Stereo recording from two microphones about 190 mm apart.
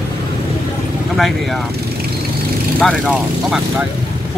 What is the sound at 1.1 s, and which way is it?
Speech, centre (ahead or behind).